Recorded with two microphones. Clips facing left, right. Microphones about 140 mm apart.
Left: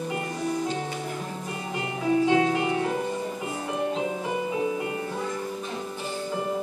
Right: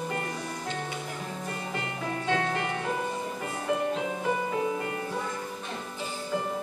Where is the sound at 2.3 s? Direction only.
15° left (ahead or behind).